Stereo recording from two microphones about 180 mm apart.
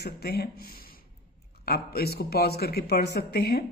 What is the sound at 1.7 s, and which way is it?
Speech, 60° left (ahead or behind).